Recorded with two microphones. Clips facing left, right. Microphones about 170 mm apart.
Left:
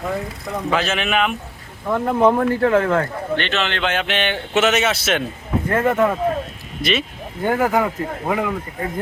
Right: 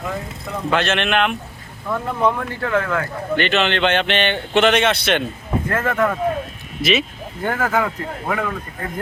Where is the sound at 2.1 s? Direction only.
45° left (ahead or behind).